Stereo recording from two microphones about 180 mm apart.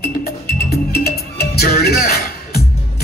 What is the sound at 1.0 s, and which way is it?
Music, 60° left (ahead or behind).